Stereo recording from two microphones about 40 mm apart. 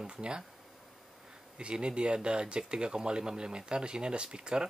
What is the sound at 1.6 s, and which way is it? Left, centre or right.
Speech, right.